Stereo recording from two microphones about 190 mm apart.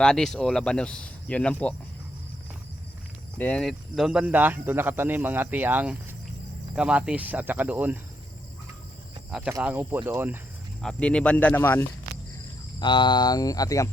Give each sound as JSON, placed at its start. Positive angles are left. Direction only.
{"t": 0.0, "sound": "speech", "side_deg": 5}
{"t": 3.3, "sound": "speech", "side_deg": 5}
{"t": 9.5, "sound": "speech", "side_deg": -15}
{"t": 10.8, "sound": "speech", "side_deg": 5}
{"t": 12.8, "sound": "speech", "side_deg": 25}